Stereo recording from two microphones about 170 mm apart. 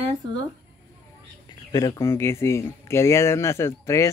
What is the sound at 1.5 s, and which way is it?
Speech, 20° left (ahead or behind).